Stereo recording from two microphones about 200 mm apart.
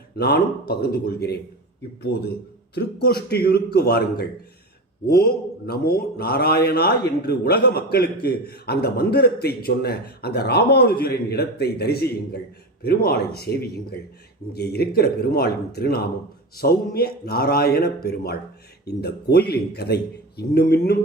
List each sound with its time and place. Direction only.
0.1 s a man's voice: 50° left (ahead or behind)